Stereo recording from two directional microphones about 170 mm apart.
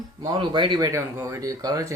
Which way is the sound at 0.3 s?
30° right (ahead or behind).